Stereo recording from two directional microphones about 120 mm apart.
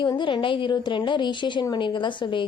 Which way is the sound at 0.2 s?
40° left (ahead or behind).